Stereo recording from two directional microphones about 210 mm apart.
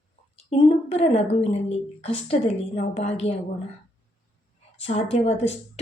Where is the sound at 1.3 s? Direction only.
30° left (ahead or behind).